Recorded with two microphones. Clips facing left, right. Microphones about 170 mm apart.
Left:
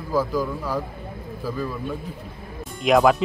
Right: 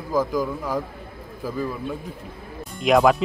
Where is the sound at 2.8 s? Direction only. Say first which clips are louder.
Even; centre (ahead or behind).